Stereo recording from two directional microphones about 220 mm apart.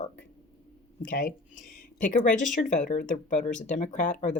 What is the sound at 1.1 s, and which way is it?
Speech, 40° left (ahead or behind).